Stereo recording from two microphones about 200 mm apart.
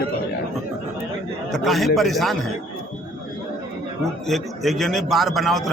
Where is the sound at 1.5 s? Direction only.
Centre (ahead or behind).